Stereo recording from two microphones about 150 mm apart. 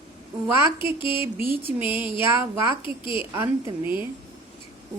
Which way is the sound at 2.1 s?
20° right (ahead or behind).